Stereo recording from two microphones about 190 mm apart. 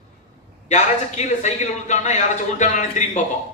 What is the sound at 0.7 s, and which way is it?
A man's voice, 35° left (ahead or behind).